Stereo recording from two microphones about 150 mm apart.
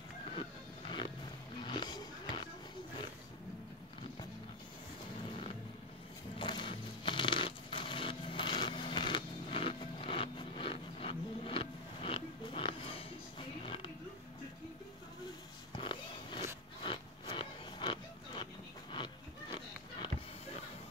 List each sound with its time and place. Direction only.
0.4 s music: 35° left (ahead or behind)
6.3 s a sound: 30° left (ahead or behind)
15.7 s vehicle: 30° left (ahead or behind)
16.8 s pig: 35° left (ahead or behind)